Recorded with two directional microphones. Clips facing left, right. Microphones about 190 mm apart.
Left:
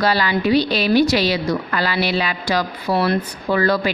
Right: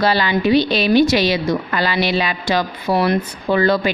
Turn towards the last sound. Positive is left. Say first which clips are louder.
# right 2 dB
turn(degrees=-25)  # may be behind; listen again after turning